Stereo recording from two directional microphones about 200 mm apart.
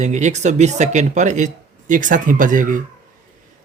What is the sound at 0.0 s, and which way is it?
Speech, 35° right (ahead or behind).